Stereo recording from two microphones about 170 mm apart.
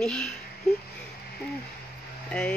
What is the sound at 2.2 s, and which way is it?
Speech, 5° left (ahead or behind).